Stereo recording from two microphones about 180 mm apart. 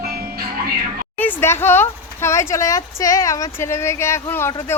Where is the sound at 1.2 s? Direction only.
10° left (ahead or behind).